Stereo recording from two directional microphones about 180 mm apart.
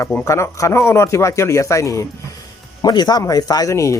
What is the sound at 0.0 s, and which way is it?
Speech, 10° left (ahead or behind).